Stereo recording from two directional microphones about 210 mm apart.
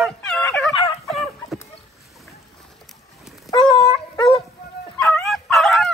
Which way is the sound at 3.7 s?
25° left (ahead or behind).